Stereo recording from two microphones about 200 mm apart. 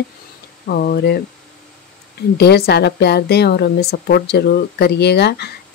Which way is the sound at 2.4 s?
55° left (ahead or behind).